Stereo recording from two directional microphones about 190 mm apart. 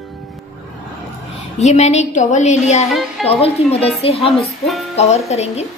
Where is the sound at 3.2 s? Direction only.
30° left (ahead or behind).